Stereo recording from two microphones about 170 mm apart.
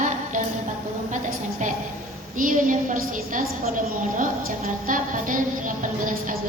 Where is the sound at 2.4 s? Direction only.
50° right (ahead or behind).